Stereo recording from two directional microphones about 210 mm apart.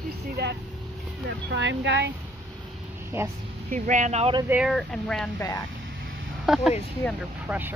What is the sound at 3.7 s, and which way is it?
Speech, 35° right (ahead or behind).